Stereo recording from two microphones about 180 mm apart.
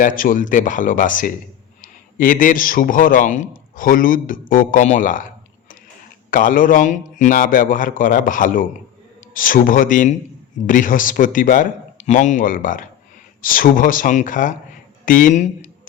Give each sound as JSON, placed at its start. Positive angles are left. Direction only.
{"t": 0.0, "sound": "a man's voice", "side_deg": 50}